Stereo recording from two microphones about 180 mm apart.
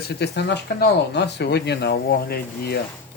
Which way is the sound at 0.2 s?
70° left (ahead or behind).